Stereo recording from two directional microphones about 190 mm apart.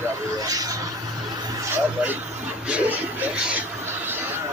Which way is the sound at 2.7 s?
5° right (ahead or behind).